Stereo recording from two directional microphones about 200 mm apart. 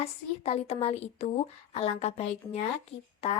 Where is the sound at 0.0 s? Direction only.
30° left (ahead or behind).